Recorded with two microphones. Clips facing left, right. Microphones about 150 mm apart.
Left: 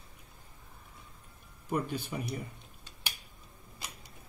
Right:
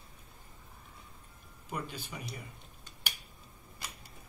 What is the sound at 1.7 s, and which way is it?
Speech, 55° left (ahead or behind).